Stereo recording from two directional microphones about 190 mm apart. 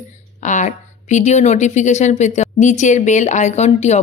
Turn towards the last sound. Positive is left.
turn(degrees=35)  # may be behind; listen again after turning